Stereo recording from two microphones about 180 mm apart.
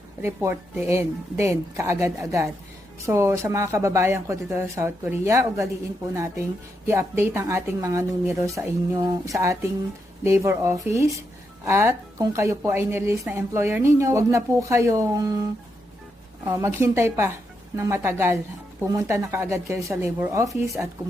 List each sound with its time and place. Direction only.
0.2 s a woman's voice: 15° right (ahead or behind)
16.5 s a woman's voice: 15° right (ahead or behind)